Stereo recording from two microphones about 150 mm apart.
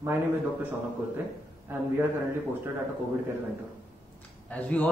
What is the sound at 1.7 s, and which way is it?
Speech, 15° right (ahead or behind).